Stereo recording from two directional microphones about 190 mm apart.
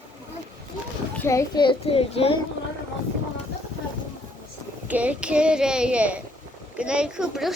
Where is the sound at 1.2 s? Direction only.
15° left (ahead or behind); by 2.3 s 30° left (ahead or behind).